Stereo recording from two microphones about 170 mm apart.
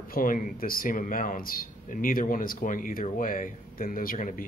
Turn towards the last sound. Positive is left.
turn(degrees=55)  # may be behind; listen again after turning